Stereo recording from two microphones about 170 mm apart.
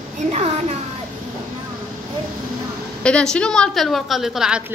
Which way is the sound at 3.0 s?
5° left (ahead or behind).